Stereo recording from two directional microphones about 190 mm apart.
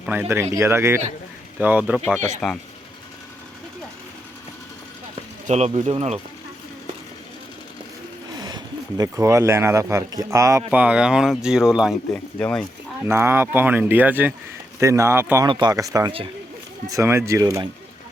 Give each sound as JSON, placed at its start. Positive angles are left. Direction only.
{"t": 0.0, "sound": "speech", "side_deg": -10}
{"t": 2.4, "sound": "speech", "side_deg": 0}
{"t": 5.5, "sound": "speech", "side_deg": -35}
{"t": 8.4, "sound": "speech", "side_deg": -20}
{"t": 13.1, "sound": "speech", "side_deg": -15}
{"t": 15.4, "sound": "speech", "side_deg": -25}